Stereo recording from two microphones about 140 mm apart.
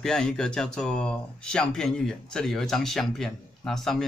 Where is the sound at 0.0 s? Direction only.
5° left (ahead or behind).